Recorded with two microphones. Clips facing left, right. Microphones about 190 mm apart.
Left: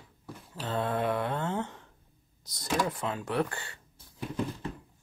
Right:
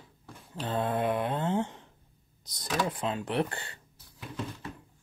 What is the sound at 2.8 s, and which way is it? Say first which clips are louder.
Mantra: right 1 dB; 25° right (ahead or behind).